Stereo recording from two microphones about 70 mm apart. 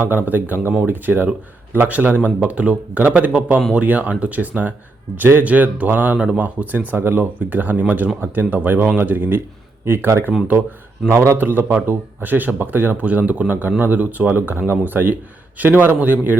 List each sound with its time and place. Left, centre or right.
0.0 s speech: right
11.3 s speech: right